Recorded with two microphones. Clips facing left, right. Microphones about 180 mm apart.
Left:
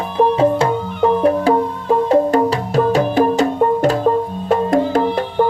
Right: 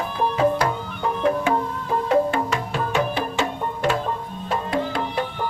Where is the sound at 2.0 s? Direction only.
35° left (ahead or behind).